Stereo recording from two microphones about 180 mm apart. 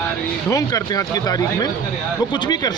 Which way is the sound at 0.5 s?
20° left (ahead or behind).